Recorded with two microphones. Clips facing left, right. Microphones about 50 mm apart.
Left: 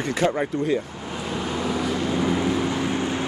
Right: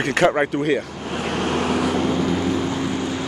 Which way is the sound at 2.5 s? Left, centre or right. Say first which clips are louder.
Right 1 dB; left.